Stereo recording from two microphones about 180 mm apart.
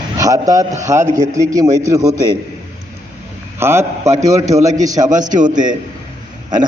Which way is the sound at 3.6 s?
15° right (ahead or behind).